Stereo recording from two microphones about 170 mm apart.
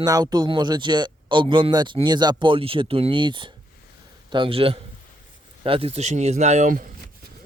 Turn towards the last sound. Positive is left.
turn(degrees=-50)  # may be behind; listen again after turning